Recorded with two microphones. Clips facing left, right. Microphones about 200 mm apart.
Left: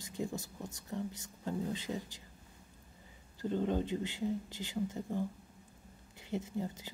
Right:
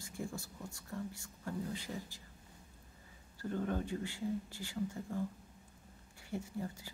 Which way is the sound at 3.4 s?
20° left (ahead or behind).